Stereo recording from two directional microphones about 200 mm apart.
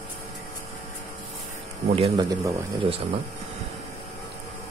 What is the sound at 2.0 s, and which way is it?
Speech, 20° right (ahead or behind).